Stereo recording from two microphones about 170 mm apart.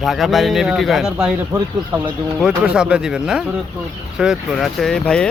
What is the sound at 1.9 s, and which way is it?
Speech, 25° right (ahead or behind).